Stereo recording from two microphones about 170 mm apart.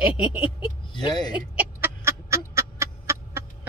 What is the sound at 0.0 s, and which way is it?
Speech, 10° right (ahead or behind).